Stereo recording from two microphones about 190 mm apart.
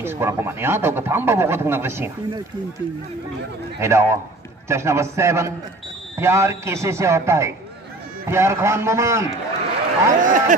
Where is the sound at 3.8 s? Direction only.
15° right (ahead or behind).